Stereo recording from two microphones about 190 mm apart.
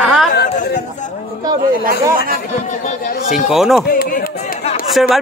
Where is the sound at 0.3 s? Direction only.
55° left (ahead or behind).